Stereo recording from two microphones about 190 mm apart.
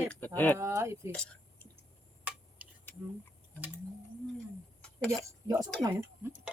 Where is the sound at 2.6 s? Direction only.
5° right (ahead or behind).